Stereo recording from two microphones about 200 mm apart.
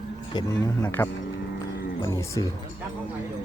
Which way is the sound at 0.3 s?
15° left (ahead or behind).